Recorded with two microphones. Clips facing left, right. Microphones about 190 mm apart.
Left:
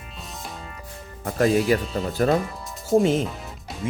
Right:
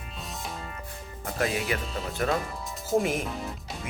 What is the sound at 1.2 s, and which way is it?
Speech, 40° left (ahead or behind).